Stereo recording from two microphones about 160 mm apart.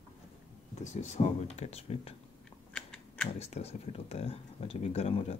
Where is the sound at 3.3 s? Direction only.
45° left (ahead or behind).